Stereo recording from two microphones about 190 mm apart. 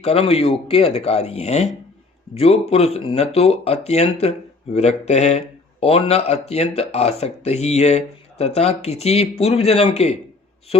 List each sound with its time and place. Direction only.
0.0 s speech: 30° left (ahead or behind)